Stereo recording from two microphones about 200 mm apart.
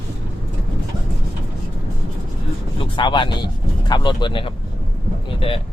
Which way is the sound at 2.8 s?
25° left (ahead or behind).